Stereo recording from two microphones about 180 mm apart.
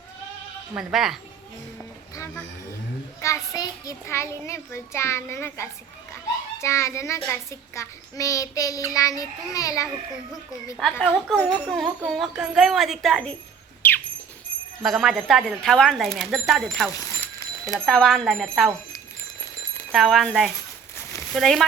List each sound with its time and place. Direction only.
0.7 s speech: 5° right (ahead or behind)
2.1 s a child's voice: 15° left (ahead or behind)
7.3 s child singing: 15° left (ahead or behind)
10.8 s speech: 5° right (ahead or behind)
13.8 s a sound: 10° left (ahead or behind)
14.8 s speech: centre (ahead or behind)
19.9 s speech: centre (ahead or behind)
21.2 s a sound: centre (ahead or behind)